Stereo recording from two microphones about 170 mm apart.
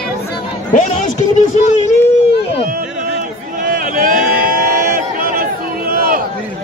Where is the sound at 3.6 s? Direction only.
55° right (ahead or behind).